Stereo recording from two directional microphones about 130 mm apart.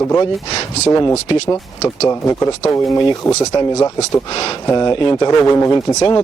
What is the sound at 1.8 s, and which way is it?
Speech, 20° left (ahead or behind).